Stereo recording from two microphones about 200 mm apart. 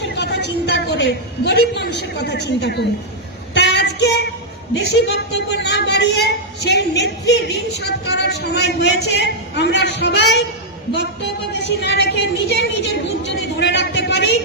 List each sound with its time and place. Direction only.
0.2 s a woman's voice: 60° left (ahead or behind)
3.5 s female singing: 55° left (ahead or behind)
4.7 s a woman's voice: 60° left (ahead or behind)